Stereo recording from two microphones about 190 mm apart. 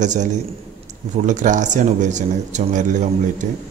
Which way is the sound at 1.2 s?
40° right (ahead or behind).